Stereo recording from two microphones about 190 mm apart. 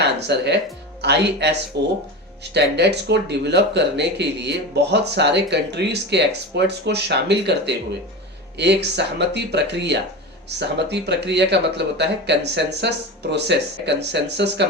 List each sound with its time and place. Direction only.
0.0 s speech: 65° right (ahead or behind)